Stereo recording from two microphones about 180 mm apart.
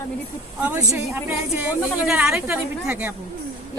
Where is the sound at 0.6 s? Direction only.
10° right (ahead or behind).